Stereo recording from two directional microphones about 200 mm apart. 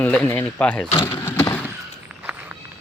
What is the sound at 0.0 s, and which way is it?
Speech, 5° left (ahead or behind).